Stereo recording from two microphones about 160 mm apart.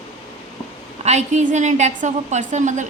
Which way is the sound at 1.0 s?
45° right (ahead or behind).